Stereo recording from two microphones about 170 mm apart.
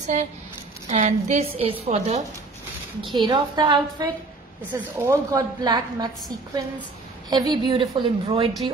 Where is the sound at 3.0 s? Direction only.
25° right (ahead or behind).